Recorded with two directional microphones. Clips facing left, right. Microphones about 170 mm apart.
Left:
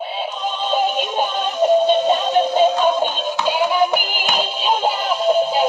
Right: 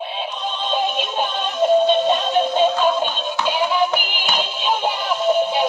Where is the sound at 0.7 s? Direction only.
10° left (ahead or behind).